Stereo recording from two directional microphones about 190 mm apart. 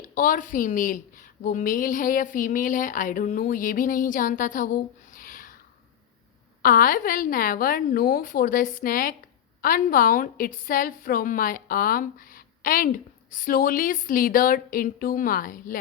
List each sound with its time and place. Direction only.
0.1 s a woman's voice: 45° left (ahead or behind)
6.6 s a woman's voice: 50° left (ahead or behind)